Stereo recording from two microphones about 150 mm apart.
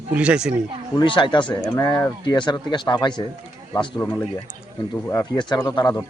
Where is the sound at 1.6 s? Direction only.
20° left (ahead or behind).